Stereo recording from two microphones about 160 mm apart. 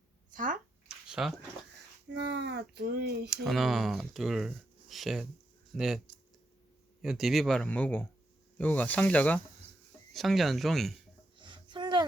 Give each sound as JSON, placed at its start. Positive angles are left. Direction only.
{"t": 0.3, "sound": "speech", "side_deg": -55}
{"t": 0.9, "sound": "a sound", "side_deg": -5}
{"t": 2.0, "sound": "speech", "side_deg": -90}
{"t": 3.2, "sound": "speech", "side_deg": 0}
{"t": 7.0, "sound": "speech", "side_deg": 0}
{"t": 11.3, "sound": "a sound", "side_deg": -30}